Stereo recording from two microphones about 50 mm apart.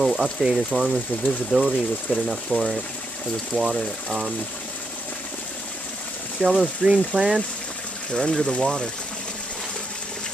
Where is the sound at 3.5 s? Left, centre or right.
Left.